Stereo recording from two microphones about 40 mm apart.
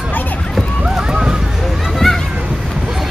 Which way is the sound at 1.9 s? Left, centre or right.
Centre.